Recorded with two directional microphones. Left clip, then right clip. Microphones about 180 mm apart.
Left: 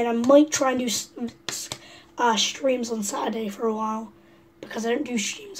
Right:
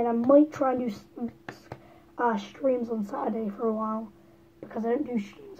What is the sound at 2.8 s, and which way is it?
Speech, 5° left (ahead or behind).